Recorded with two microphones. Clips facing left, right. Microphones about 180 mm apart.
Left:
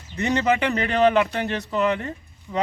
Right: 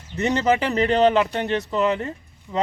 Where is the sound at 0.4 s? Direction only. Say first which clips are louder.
Right 2 dB; 30° right (ahead or behind).